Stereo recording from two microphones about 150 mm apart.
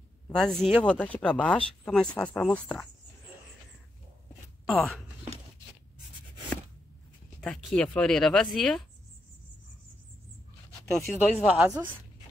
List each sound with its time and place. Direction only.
0.3 s speech: 5° left (ahead or behind)
4.6 s speech: centre (ahead or behind)
7.3 s speech: 5° left (ahead or behind)
10.9 s speech: 5° left (ahead or behind)
11.4 s a woman's voice: 10° right (ahead or behind)